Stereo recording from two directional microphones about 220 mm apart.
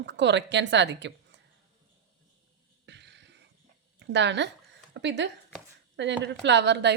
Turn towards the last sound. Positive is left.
turn(degrees=-50)  # may be behind; listen again after turning